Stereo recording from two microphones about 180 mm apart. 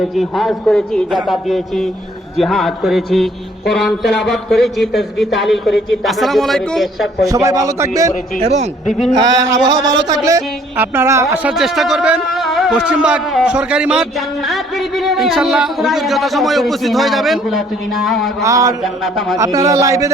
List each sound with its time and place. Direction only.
0.2 s speech: centre (ahead or behind)
7.3 s speech: 20° right (ahead or behind)
8.4 s a man's voice: 35° right (ahead or behind)
9.1 s speech: 20° right (ahead or behind)
11.5 s speech: centre (ahead or behind)
18.4 s speech: 20° right (ahead or behind)
18.8 s speech: centre (ahead or behind)
19.4 s speech: 20° right (ahead or behind)